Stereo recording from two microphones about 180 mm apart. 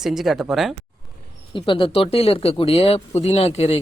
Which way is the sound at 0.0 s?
Centre (ahead or behind).